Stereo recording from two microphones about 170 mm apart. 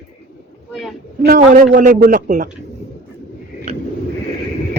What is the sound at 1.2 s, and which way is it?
Speech, 50° right (ahead or behind).